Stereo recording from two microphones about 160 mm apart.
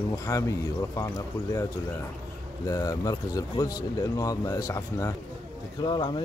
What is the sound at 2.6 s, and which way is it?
Speech, 20° left (ahead or behind).